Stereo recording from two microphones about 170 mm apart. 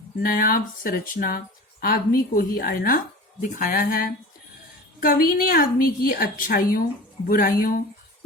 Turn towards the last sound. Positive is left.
turn(degrees=60)  # may be behind; listen again after turning